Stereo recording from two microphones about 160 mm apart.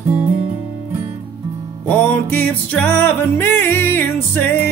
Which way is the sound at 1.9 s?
10° left (ahead or behind).